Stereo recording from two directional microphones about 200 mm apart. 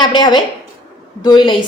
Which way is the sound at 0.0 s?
20° left (ahead or behind).